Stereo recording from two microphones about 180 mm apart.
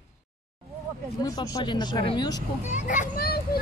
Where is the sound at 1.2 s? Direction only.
20° left (ahead or behind).